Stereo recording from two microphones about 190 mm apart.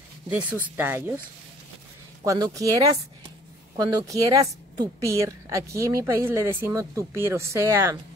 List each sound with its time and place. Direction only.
0.3 s speech: 10° right (ahead or behind)
2.2 s a woman's voice: 20° right (ahead or behind)